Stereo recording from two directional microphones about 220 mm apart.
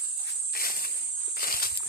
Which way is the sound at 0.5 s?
40° left (ahead or behind).